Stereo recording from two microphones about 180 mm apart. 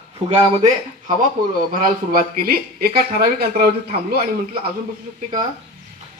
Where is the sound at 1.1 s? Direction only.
50° right (ahead or behind).